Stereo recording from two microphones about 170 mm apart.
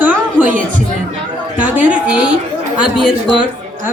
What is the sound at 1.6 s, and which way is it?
Speech, 10° right (ahead or behind).